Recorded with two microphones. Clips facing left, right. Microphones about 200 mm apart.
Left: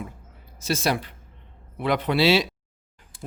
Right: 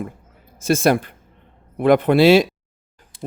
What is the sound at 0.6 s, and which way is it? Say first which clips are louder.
Speech: right 8 dB; 50° right (ahead or behind).